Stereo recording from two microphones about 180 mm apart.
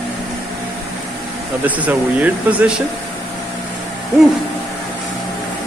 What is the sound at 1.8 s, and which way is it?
Speech, 10° right (ahead or behind).